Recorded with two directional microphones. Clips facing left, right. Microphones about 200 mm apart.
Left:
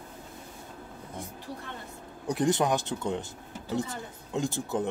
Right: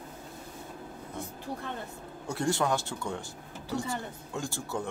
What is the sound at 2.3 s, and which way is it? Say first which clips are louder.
Speech: left 3 dB; 20° left (ahead or behind).